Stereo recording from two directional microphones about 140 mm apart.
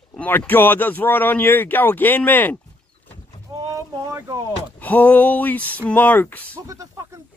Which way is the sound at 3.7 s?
20° right (ahead or behind).